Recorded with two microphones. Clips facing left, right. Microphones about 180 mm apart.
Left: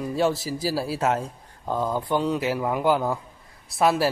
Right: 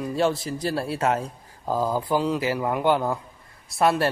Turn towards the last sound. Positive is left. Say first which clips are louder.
# even
turn(degrees=0)  # may be behind; listen again after turning